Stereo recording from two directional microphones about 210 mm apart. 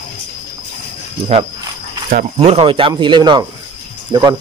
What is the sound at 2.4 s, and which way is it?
Speech, 25° right (ahead or behind).